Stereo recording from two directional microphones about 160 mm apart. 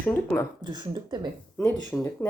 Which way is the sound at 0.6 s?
25° right (ahead or behind).